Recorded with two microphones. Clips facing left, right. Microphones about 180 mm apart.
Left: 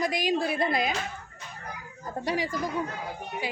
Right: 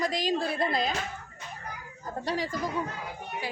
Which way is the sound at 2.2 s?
10° left (ahead or behind).